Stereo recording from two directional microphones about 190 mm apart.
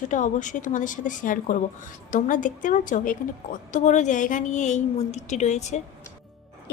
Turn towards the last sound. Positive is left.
turn(degrees=35)  # may be behind; listen again after turning